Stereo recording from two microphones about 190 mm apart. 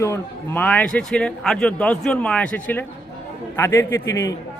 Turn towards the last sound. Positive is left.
turn(degrees=15)  # may be behind; listen again after turning